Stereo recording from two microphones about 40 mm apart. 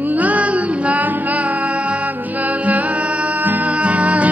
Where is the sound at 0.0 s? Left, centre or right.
Right.